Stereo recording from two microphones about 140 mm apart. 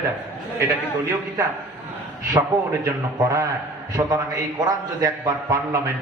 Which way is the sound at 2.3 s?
20° right (ahead or behind).